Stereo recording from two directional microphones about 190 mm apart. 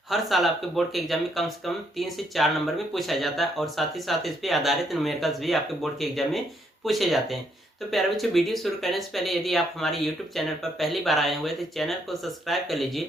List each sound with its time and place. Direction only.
0.1 s speech: centre (ahead or behind)